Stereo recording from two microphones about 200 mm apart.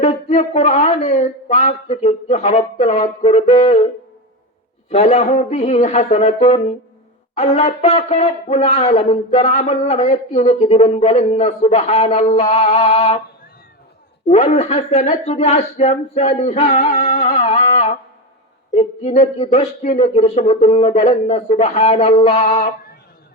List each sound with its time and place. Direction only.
0.0 s speech: 35° left (ahead or behind)
4.9 s speech: 35° left (ahead or behind)
14.3 s speech: 35° left (ahead or behind)